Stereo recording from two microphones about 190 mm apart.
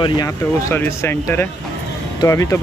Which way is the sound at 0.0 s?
15° left (ahead or behind).